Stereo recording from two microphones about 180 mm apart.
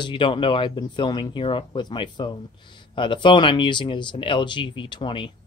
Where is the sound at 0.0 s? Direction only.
30° left (ahead or behind).